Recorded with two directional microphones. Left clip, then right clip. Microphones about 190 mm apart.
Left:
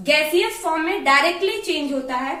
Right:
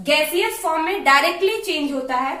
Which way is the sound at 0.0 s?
15° right (ahead or behind).